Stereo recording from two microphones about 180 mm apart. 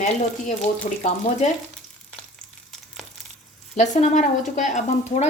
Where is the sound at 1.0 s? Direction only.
40° left (ahead or behind).